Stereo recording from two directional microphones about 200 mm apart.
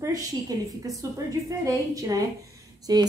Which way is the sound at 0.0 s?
15° right (ahead or behind).